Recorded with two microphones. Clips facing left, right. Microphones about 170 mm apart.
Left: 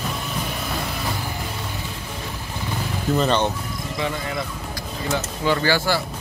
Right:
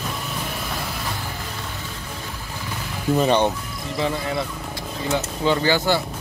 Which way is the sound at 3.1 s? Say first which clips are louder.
Right 2 dB; 15° right (ahead or behind).